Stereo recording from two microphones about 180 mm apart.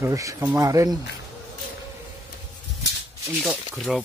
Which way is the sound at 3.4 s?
Centre (ahead or behind).